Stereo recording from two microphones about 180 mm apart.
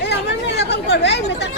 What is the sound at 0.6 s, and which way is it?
Speech, 70° left (ahead or behind).